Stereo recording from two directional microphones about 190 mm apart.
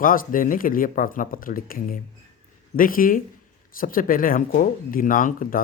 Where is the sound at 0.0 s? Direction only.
45° left (ahead or behind).